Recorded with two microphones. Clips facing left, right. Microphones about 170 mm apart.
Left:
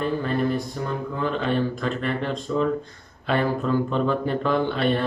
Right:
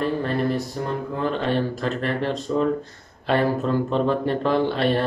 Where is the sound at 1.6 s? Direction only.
35° right (ahead or behind).